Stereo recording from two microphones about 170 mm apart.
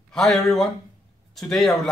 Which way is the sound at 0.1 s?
Centre (ahead or behind).